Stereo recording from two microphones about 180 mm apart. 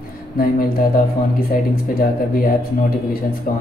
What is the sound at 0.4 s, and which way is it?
Speech, 55° left (ahead or behind).